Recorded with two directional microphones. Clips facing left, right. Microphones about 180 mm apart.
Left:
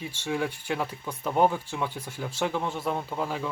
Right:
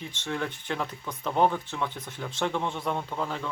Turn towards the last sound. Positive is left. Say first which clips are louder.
# left 1 dB
turn(degrees=10)  # may be behind; listen again after turning